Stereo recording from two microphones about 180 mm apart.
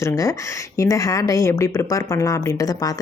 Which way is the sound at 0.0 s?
15° left (ahead or behind).